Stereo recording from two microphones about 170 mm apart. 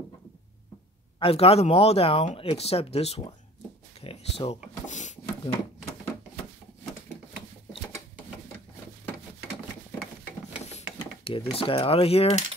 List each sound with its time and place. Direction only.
1.2 s speech: 35° left (ahead or behind)
4.0 s a sound: 35° left (ahead or behind)
4.8 s speech: 45° left (ahead or behind)
10.7 s filing: 35° left (ahead or behind)
11.5 s speech: 30° left (ahead or behind)